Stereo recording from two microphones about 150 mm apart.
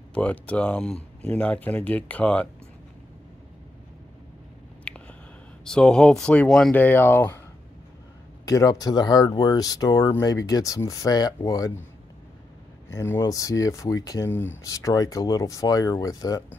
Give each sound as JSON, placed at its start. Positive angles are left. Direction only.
{"t": 0.1, "sound": "speech", "side_deg": 10}
{"t": 4.9, "sound": "a sound", "side_deg": 5}
{"t": 5.7, "sound": "speech", "side_deg": 5}
{"t": 8.5, "sound": "speech", "side_deg": 25}
{"t": 12.9, "sound": "speech", "side_deg": 20}